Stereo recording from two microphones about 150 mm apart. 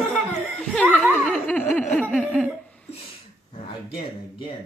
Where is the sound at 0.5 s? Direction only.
10° left (ahead or behind).